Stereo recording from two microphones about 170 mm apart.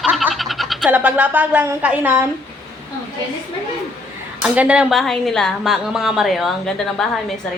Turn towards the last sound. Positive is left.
turn(degrees=0)  # may be behind; listen again after turning